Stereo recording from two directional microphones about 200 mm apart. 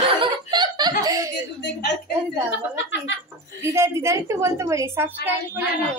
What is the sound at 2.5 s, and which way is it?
Speech, 65° left (ahead or behind).